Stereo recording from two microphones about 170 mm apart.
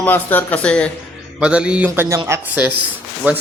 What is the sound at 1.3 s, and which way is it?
A man's voice, 5° right (ahead or behind).